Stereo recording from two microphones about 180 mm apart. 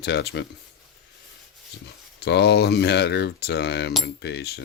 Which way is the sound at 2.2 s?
70° left (ahead or behind).